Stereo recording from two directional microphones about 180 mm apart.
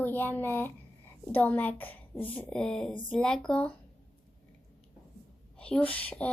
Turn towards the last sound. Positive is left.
turn(degrees=10)  # may be behind; listen again after turning